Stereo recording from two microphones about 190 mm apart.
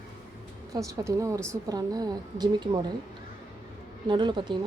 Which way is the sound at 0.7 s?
15° right (ahead or behind).